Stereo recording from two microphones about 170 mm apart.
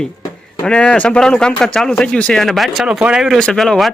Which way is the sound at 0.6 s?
5° left (ahead or behind).